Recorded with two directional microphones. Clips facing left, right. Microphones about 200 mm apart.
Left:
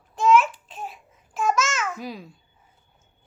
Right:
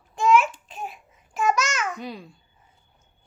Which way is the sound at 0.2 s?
Centre (ahead or behind).